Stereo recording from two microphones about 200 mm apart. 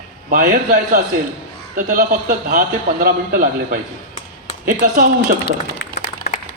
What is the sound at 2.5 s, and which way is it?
A man's voice, 45° right (ahead or behind).